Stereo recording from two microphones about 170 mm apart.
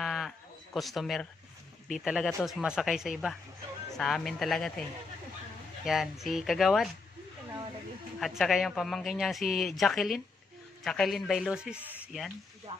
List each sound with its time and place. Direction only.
0.0 s bleat: centre (ahead or behind)
0.7 s speech: centre (ahead or behind)
5.9 s speech: centre (ahead or behind)
8.2 s speech: centre (ahead or behind)
12.7 s a sound: 40° right (ahead or behind)